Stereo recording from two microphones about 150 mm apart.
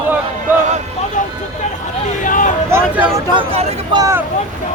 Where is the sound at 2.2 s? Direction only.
60° left (ahead or behind).